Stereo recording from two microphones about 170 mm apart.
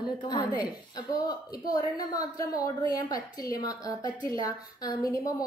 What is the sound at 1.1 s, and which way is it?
A woman's voice, 20° left (ahead or behind).